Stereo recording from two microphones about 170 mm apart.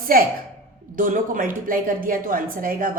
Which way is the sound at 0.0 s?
60° right (ahead or behind).